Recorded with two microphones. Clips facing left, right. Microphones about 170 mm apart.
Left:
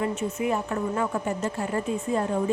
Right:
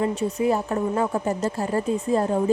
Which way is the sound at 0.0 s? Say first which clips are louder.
Right 4 dB; 35° right (ahead or behind).